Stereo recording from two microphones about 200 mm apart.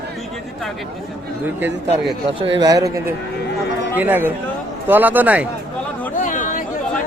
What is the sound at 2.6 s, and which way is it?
A man's voice, 20° right (ahead or behind).